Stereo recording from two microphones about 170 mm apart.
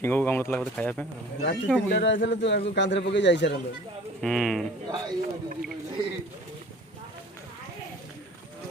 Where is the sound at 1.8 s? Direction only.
90° left.